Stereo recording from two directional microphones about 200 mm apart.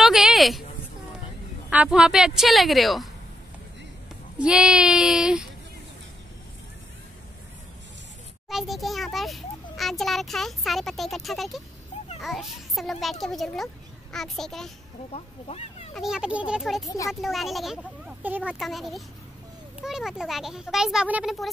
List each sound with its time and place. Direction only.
0.0 s a sound: centre (ahead or behind)
1.7 s a child's voice: 5° right (ahead or behind)
4.4 s a child's voice: 5° right (ahead or behind)
8.5 s a child's voice: centre (ahead or behind)
15.0 s speech: 30° left (ahead or behind)
15.9 s a child's voice: centre (ahead or behind)